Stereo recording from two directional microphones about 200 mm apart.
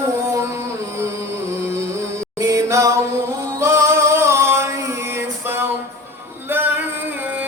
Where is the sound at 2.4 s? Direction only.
15° right (ahead or behind).